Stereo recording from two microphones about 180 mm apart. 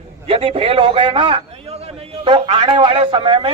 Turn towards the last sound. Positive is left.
turn(degrees=-30)  # may be behind; listen again after turning